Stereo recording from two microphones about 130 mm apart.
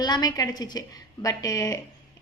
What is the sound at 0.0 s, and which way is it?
A woman's voice, 30° left (ahead or behind).